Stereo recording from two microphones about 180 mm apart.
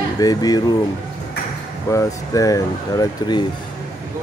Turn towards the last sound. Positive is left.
turn(degrees=20)  # may be behind; listen again after turning